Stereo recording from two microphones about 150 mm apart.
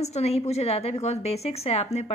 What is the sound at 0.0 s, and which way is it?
A woman's voice, 45° left (ahead or behind).